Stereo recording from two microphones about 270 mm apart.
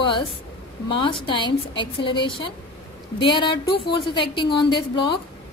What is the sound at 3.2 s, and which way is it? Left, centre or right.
A woman's voice, centre.